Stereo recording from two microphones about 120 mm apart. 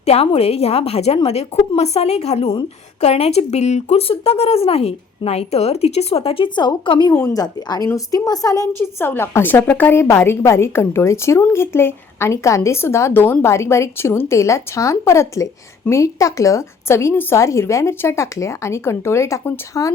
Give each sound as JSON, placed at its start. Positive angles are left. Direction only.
{"t": 0.0, "sound": "a woman's voice", "side_deg": 60}